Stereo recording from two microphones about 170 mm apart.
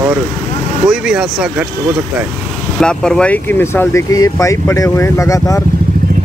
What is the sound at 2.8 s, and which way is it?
Speech, 5° left (ahead or behind).